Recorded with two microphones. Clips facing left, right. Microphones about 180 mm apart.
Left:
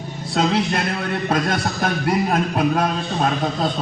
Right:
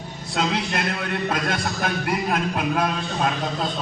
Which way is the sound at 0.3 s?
35° left (ahead or behind).